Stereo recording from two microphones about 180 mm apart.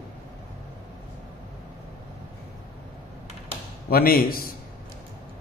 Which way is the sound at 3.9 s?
55° left (ahead or behind).